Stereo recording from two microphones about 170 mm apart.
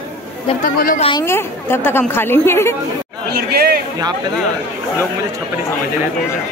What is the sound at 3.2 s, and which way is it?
Speech, 70° right (ahead or behind).